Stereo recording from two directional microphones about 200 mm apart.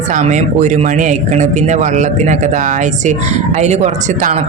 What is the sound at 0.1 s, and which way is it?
Speech, 35° right (ahead or behind).